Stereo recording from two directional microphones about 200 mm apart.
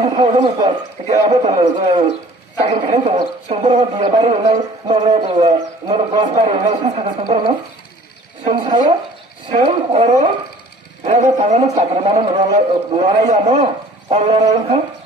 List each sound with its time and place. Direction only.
0.0 s a man's voice: 25° right (ahead or behind)
1.0 s speech: 35° right (ahead or behind)
1.6 s speech: 25° right (ahead or behind)